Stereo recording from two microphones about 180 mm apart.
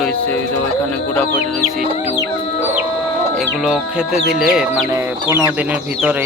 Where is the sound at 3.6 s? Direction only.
5° right (ahead or behind).